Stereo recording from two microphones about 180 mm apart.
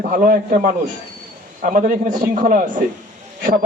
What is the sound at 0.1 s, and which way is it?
A man's voice, 50° right (ahead or behind).